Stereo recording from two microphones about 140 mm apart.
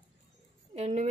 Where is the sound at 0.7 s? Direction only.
55° right (ahead or behind).